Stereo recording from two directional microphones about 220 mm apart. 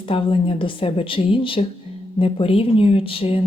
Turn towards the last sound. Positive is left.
turn(degrees=25)  # may be behind; listen again after turning